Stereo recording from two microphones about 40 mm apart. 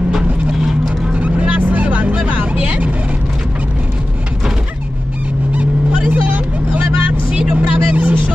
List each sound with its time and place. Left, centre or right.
1.1 s vehicle: right
5.5 s vehicle: right
7.3 s vehicle: right